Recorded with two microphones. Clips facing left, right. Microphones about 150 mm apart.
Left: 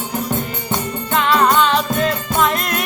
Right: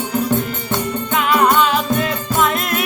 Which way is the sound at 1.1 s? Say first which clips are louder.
Even; 10° right (ahead or behind).